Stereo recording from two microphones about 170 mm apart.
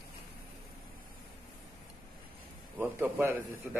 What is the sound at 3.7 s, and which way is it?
Speech, centre (ahead or behind).